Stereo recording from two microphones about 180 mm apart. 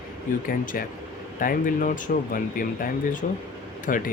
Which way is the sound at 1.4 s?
50° left (ahead or behind).